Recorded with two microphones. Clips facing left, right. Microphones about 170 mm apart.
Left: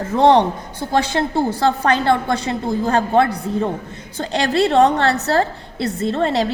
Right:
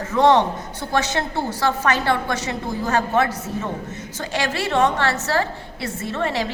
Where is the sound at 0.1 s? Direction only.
45° left (ahead or behind).